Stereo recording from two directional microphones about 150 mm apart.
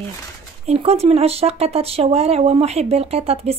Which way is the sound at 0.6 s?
45° right (ahead or behind).